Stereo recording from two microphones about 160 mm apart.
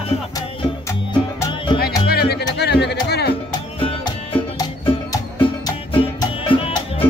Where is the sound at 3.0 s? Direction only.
90° left.